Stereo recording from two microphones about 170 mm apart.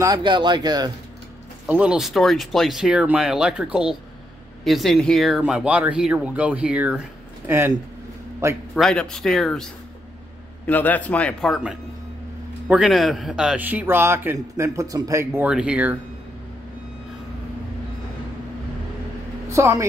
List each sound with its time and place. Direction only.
0.0 s speech: 25° right (ahead or behind)
1.7 s a man's voice: 5° right (ahead or behind)
8.7 s speech: 5° left (ahead or behind)
10.7 s speech: 10° left (ahead or behind)
12.6 s a man's voice: 5° right (ahead or behind)
19.5 s speech: 15° right (ahead or behind)